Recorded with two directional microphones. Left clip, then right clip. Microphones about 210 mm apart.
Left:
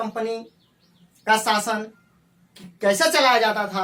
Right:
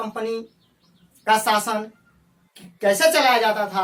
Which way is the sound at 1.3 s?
5° left (ahead or behind).